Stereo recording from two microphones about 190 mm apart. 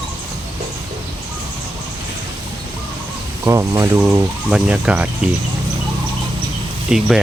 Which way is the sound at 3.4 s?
15° right (ahead or behind).